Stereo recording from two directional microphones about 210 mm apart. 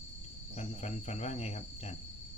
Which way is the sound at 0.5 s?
30° left (ahead or behind).